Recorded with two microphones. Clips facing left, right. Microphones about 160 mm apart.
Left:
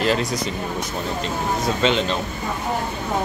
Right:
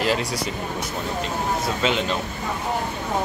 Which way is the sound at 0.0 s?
10° right (ahead or behind).